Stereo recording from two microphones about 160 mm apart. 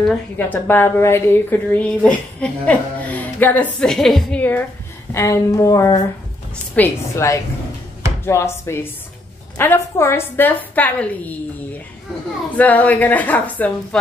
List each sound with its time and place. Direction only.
0.1 s a woman's voice: 10° left (ahead or behind)
12.5 s a woman's voice: 10° left (ahead or behind)